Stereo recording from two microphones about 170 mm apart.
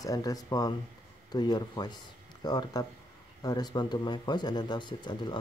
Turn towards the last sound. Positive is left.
turn(degrees=25)  # may be behind; listen again after turning